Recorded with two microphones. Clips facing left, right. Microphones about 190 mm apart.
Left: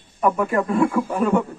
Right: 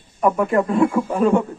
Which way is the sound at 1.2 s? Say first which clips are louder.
Right 3 dB; 30° right (ahead or behind).